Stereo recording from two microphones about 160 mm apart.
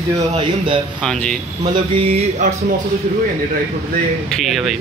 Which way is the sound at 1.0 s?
5° left (ahead or behind).